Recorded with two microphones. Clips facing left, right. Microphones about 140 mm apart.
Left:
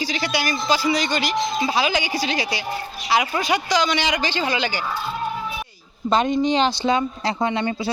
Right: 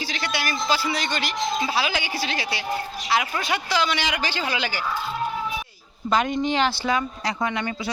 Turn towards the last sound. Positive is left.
turn(degrees=25)  # may be behind; listen again after turning